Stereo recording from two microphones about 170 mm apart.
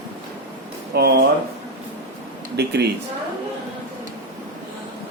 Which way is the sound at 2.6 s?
75° right (ahead or behind).